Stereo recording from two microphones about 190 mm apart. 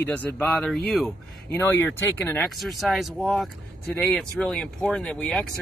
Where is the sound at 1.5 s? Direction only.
10° left (ahead or behind).